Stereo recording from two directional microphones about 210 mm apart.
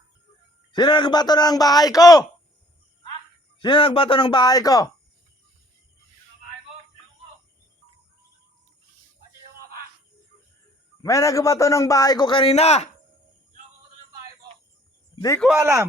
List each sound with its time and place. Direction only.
0.7 s speech: 20° left (ahead or behind)
3.6 s speech: 25° left (ahead or behind)
11.0 s a man's voice: 15° left (ahead or behind); by 12.9 s 30° left (ahead or behind)
15.4 s speech: centre (ahead or behind)
15.6 s speech: 15° right (ahead or behind)